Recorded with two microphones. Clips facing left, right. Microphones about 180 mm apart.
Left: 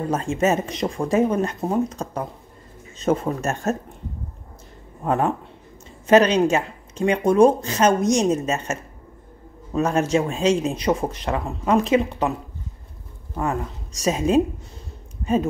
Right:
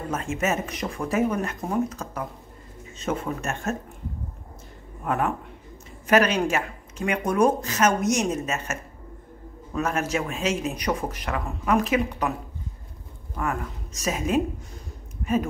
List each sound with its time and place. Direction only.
0.1 s speech: 35° left (ahead or behind)
5.0 s a man's voice: 30° left (ahead or behind)
13.4 s speech: 30° left (ahead or behind)